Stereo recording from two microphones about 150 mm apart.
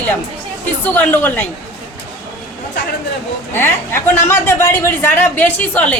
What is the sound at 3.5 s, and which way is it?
A woman's voice, 15° left (ahead or behind).